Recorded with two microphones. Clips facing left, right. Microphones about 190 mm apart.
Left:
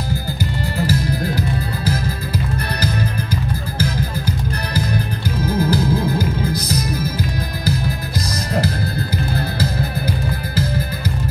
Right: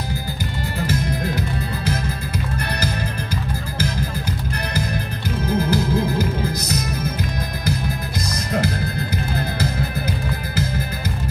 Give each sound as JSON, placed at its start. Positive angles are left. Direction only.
{"t": 5.7, "sound": "music", "side_deg": 30}